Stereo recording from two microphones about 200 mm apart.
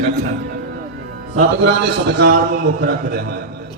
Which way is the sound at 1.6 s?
60° right (ahead or behind).